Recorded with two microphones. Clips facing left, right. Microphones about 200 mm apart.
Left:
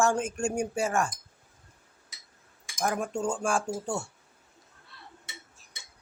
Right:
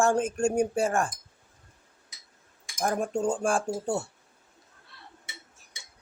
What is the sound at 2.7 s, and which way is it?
Speech, 30° right (ahead or behind).